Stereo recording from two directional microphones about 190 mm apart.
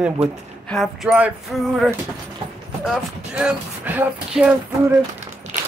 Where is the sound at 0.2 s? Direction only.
30° right (ahead or behind).